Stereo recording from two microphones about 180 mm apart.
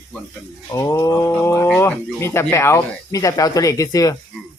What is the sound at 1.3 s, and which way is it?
Speech, 10° left (ahead or behind).